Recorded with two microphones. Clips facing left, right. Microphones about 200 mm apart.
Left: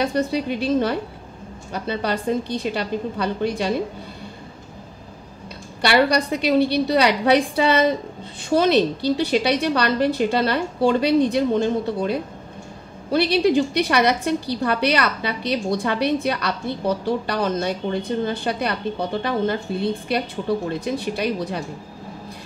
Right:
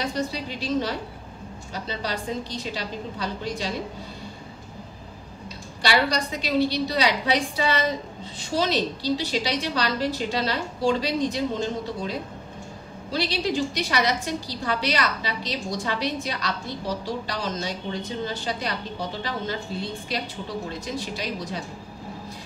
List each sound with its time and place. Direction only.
0.0 s a woman's voice: 55° left (ahead or behind)
5.8 s a woman's voice: 60° left (ahead or behind)